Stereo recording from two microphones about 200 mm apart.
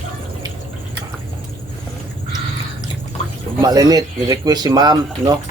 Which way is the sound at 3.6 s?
20° right (ahead or behind).